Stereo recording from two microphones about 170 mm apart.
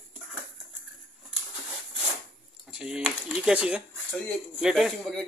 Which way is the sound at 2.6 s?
5° right (ahead or behind).